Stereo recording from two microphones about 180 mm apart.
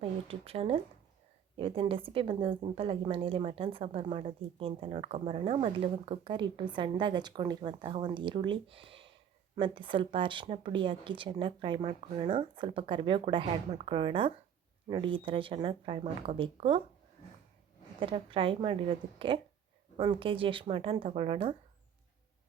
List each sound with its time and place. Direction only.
0.0 s a woman's voice: 30° right (ahead or behind)
18.0 s a woman's voice: 30° right (ahead or behind)